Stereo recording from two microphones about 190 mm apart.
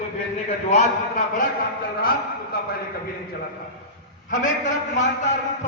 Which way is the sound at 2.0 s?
50° left (ahead or behind).